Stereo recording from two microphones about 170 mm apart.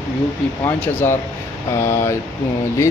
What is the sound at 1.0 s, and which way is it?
Speech, 15° left (ahead or behind).